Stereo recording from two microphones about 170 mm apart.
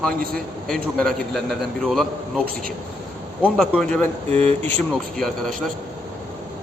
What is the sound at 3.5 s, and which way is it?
Speech, centre (ahead or behind).